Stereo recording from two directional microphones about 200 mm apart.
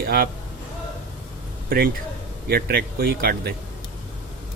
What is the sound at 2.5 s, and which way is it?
Speech, 50° right (ahead or behind).